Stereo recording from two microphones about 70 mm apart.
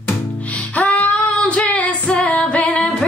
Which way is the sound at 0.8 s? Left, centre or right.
Centre.